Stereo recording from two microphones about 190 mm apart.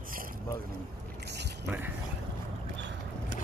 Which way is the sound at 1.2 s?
65° right (ahead or behind).